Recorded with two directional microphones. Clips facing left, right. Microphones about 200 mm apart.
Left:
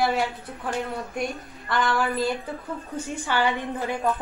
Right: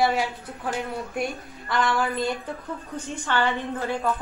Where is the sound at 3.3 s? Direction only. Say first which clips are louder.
Even; 15° left (ahead or behind).